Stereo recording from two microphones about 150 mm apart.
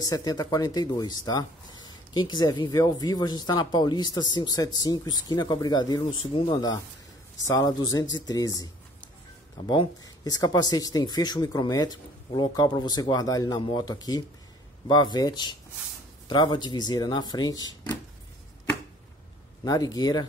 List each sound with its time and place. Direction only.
0.1 s speech: 25° left (ahead or behind)
9.6 s speech: 35° left (ahead or behind)
10.0 s speech: 25° left (ahead or behind)
19.6 s speech: 25° left (ahead or behind)